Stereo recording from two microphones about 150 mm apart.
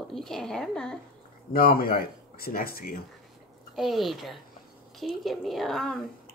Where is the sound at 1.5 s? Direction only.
80° left.